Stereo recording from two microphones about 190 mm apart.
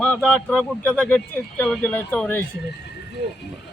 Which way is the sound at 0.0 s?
5° left (ahead or behind).